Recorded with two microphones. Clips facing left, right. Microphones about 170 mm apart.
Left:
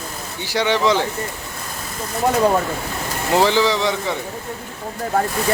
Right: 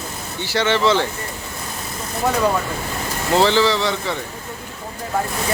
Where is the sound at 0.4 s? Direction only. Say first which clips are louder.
Even; 15° left (ahead or behind).